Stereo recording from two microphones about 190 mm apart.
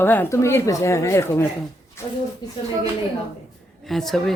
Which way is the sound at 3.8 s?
Centre (ahead or behind).